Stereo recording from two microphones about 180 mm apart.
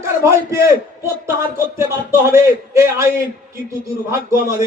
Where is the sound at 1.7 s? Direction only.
15° right (ahead or behind).